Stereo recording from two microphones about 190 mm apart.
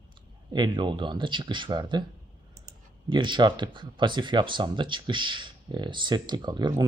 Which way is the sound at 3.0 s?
25° right (ahead or behind).